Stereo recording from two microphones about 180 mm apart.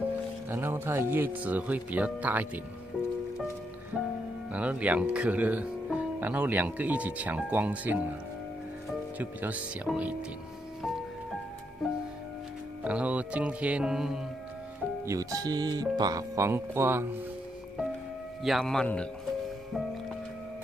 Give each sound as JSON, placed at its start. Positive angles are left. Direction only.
{"t": 0.5, "sound": "speech", "side_deg": -10}
{"t": 4.5, "sound": "speech", "side_deg": -10}
{"t": 9.2, "sound": "speech", "side_deg": -10}
{"t": 11.8, "sound": "music", "side_deg": 0}
{"t": 12.8, "sound": "speech", "side_deg": -10}
{"t": 15.0, "sound": "speech", "side_deg": -20}
{"t": 18.4, "sound": "speech", "side_deg": 0}